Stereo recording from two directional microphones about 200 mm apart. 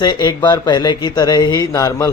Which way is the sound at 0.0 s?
20° left (ahead or behind).